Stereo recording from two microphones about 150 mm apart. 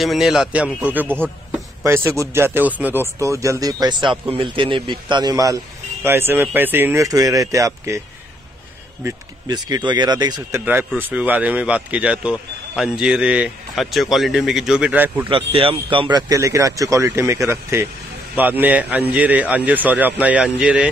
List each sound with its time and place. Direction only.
0.0 s a man's voice: centre (ahead or behind); by 8.0 s 20° right (ahead or behind)
9.0 s speech: 25° right (ahead or behind)
10.6 s speech: 15° right (ahead or behind)
15.2 s speech: 35° right (ahead or behind); by 20.9 s 10° right (ahead or behind)